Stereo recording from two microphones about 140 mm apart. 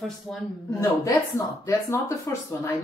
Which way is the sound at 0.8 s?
25° left (ahead or behind).